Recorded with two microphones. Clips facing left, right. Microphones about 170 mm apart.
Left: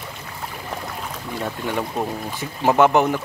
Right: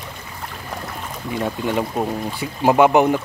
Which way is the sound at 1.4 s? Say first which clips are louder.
Right 4 dB; 15° right (ahead or behind).